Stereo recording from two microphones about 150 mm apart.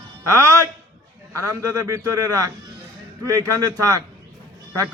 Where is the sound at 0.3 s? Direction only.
20° right (ahead or behind).